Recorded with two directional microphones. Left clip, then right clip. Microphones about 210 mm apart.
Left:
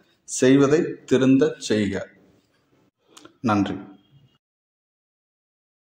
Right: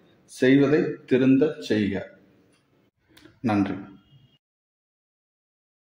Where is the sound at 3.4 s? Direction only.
20° left (ahead or behind).